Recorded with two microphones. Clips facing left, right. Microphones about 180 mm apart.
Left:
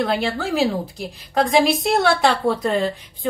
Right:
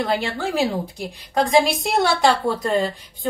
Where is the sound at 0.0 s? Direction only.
Centre (ahead or behind).